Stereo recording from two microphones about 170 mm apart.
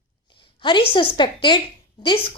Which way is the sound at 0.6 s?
30° left (ahead or behind).